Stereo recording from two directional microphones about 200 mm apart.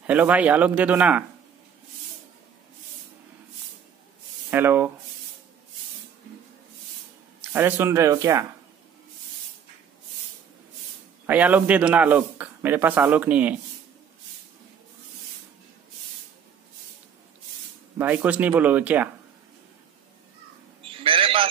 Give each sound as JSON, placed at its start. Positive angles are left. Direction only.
{"t": 0.0, "sound": "a man's voice", "side_deg": -5}
{"t": 4.5, "sound": "speech", "side_deg": -10}
{"t": 7.5, "sound": "a man's voice", "side_deg": -10}
{"t": 11.2, "sound": "a man's voice", "side_deg": -10}
{"t": 17.9, "sound": "a man's voice", "side_deg": -10}
{"t": 20.8, "sound": "a sound", "side_deg": -25}